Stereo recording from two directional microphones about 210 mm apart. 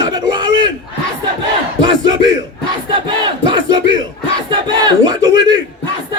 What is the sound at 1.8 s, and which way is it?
Battle cry, 20° right (ahead or behind).